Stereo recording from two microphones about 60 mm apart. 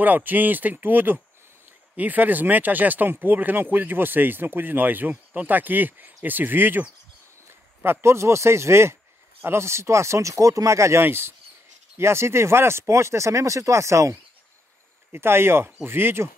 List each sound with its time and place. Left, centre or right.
0.0 s speech: right
11.0 s speech: right
15.1 s speech: right